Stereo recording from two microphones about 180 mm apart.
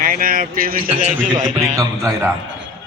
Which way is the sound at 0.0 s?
50° right (ahead or behind).